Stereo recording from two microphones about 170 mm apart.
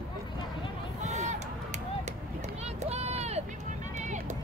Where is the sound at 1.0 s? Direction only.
45° right (ahead or behind).